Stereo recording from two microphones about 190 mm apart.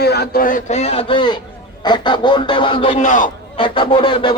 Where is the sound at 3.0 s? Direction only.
45° left (ahead or behind).